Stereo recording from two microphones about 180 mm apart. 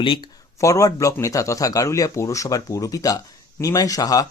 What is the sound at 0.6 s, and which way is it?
Speech, 15° left (ahead or behind).